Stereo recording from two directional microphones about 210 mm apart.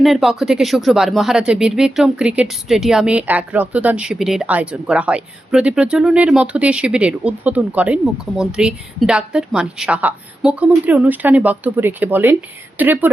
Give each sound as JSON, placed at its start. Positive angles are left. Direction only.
{"t": 0.0, "sound": "speech", "side_deg": 0}